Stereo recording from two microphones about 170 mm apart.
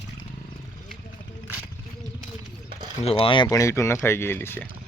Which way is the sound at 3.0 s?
35° left (ahead or behind).